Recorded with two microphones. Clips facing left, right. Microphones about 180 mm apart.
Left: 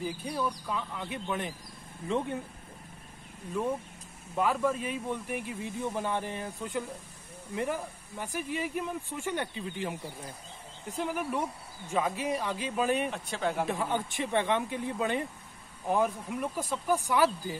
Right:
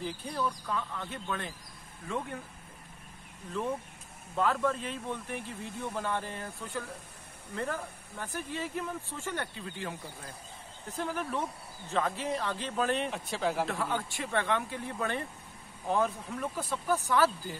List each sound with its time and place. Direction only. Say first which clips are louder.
0.0 s speech: left 1 dB; 15° left (ahead or behind)
4.4 s speech: left 1 dB; 10° left (ahead or behind)
13.1 s speech: even; centre (ahead or behind)
13.7 s speech: left 2 dB; 15° left (ahead or behind)